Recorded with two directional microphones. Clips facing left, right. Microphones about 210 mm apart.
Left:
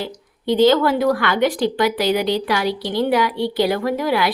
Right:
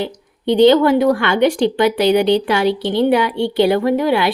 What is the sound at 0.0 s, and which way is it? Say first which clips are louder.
A woman's voice: right 5 dB; 20° right (ahead or behind).